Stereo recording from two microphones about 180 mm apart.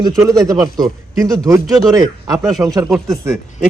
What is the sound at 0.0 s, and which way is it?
Speech, 20° right (ahead or behind).